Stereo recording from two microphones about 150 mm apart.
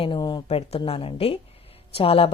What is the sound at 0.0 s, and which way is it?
Speech, 30° left (ahead or behind).